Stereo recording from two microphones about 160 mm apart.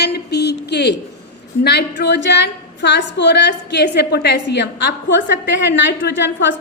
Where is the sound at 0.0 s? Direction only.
90° left.